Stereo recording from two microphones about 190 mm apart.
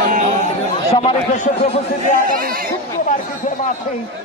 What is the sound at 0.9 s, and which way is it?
A man's voice, 35° left (ahead or behind).